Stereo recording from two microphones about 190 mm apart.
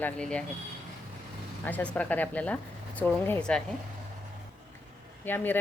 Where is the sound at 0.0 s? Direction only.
5° left (ahead or behind).